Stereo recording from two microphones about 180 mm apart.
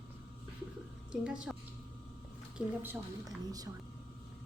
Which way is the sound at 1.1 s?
5° right (ahead or behind).